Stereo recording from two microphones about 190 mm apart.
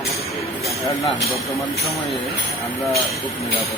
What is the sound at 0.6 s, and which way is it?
Speech, centre (ahead or behind).